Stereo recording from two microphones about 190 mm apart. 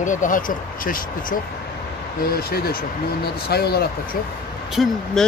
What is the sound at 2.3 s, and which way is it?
Speech, 55° left (ahead or behind).